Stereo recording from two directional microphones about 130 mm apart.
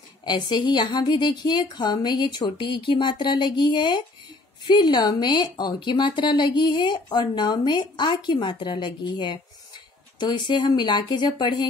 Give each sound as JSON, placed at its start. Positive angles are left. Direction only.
{"t": 0.2, "sound": "speech", "side_deg": 35}